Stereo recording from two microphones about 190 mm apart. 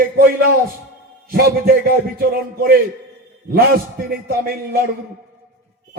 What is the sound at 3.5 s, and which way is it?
A man's voice, 50° right (ahead or behind).